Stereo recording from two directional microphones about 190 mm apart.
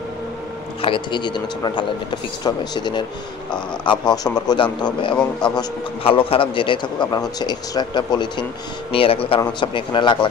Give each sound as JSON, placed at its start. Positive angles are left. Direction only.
{"t": 0.8, "sound": "speech", "side_deg": 25}